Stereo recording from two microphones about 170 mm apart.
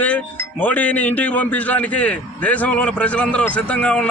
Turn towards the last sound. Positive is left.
turn(degrees=5)  # may be behind; listen again after turning